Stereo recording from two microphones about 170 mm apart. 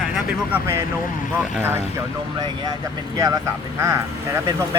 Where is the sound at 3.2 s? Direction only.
20° right (ahead or behind).